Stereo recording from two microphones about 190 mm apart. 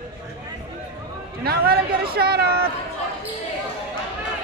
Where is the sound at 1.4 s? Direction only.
55° right (ahead or behind).